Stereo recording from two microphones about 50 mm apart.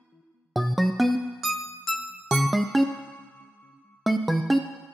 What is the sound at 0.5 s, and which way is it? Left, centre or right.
Music, centre.